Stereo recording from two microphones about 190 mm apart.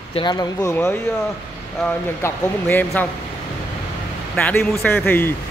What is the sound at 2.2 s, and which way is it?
Speech, 10° left (ahead or behind).